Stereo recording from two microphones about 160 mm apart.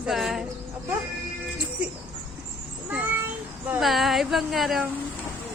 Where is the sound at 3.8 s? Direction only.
Centre (ahead or behind).